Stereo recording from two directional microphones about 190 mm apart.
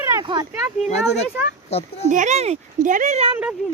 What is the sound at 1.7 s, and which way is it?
Speech, 35° left (ahead or behind).